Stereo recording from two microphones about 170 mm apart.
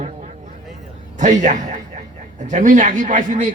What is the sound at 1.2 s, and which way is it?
A man's voice, 45° right (ahead or behind).